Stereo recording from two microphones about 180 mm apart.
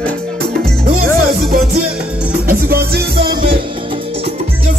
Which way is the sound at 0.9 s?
55° right (ahead or behind).